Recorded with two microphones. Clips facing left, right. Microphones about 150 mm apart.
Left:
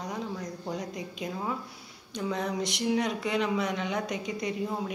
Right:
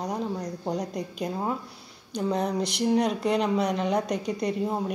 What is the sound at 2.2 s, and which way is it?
Speech, 35° right (ahead or behind).